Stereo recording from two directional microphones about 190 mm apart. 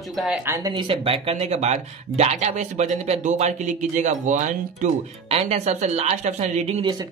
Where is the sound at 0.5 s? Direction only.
20° right (ahead or behind).